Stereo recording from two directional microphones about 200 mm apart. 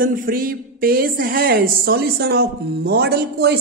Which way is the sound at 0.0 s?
45° right (ahead or behind).